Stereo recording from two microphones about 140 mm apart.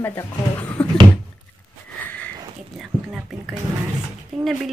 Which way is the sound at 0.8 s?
10° left (ahead or behind).